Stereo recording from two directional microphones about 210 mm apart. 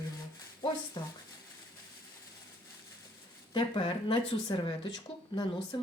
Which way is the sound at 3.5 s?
25° left (ahead or behind).